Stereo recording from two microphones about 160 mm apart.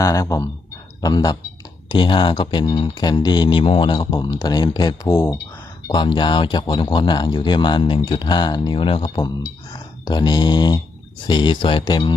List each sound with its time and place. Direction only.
0.0 s speech: 20° left (ahead or behind)